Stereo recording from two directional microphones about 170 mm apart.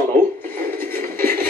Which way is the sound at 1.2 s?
60° right (ahead or behind).